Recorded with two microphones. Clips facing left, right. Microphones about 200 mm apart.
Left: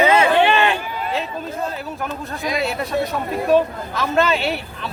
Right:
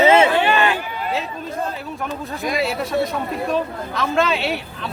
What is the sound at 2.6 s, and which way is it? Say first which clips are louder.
Speech: right 1 dB; centre (ahead or behind).